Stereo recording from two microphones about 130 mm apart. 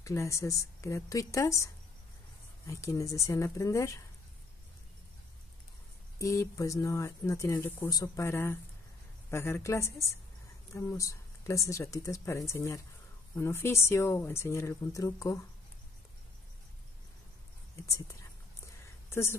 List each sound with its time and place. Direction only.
0.0 s speech: 20° left (ahead or behind)
6.1 s speech: 25° left (ahead or behind)
17.8 s speech: 25° left (ahead or behind)